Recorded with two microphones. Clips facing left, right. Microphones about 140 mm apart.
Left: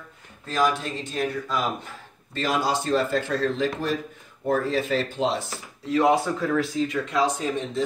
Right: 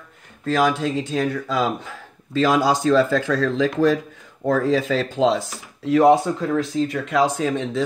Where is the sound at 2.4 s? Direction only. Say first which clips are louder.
Right 6 dB; 90° right.